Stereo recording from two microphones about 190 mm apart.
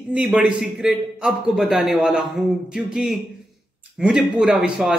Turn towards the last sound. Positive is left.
turn(degrees=-5)  # may be behind; listen again after turning